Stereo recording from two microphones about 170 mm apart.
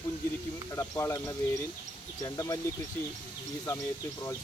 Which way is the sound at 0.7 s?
15° left (ahead or behind).